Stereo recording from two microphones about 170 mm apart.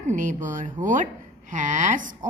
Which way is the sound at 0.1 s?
45° right (ahead or behind).